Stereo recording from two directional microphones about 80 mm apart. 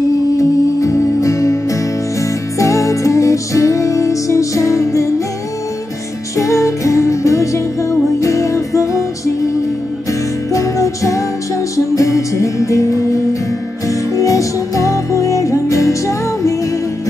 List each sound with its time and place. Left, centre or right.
0.4 s music: left
6.3 s music: left
10.5 s music: left